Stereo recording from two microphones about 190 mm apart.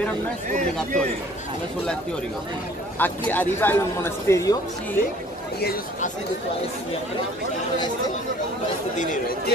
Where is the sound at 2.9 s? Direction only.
10° left (ahead or behind).